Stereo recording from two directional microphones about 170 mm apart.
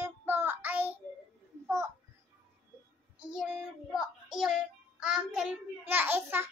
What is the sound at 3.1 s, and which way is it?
Child singing, 5° right (ahead or behind).